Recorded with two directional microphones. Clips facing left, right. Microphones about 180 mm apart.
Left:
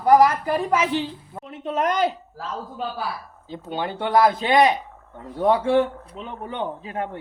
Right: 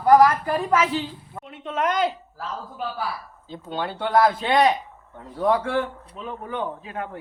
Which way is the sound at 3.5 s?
15° left (ahead or behind).